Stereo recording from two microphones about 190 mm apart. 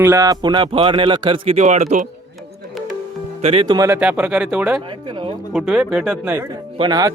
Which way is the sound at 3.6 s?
20° right (ahead or behind).